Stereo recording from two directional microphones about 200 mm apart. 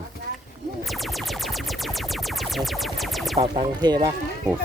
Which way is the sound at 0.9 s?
Centre (ahead or behind).